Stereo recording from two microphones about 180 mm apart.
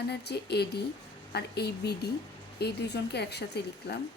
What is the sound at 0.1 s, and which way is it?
Speech, 65° left (ahead or behind).